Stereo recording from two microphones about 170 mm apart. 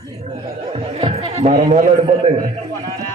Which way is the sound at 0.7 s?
30° right (ahead or behind).